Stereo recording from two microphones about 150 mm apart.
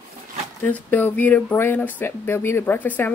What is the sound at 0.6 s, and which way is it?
Speech, 10° left (ahead or behind).